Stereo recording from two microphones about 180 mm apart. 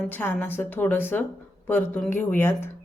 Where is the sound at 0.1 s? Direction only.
10° left (ahead or behind).